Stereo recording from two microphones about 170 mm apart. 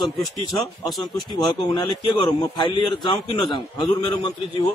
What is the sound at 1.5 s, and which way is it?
A man's voice, 25° left (ahead or behind).